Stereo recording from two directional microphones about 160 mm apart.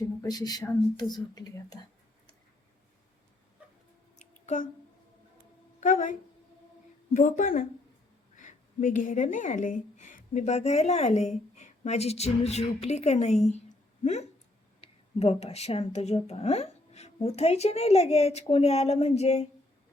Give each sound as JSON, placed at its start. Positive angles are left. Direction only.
{"t": 0.2, "sound": "speech", "side_deg": 25}
{"t": 4.2, "sound": "a sound", "side_deg": 50}
{"t": 5.8, "sound": "a woman's voice", "side_deg": 55}